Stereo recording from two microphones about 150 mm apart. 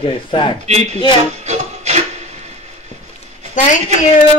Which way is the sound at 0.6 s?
45° right (ahead or behind).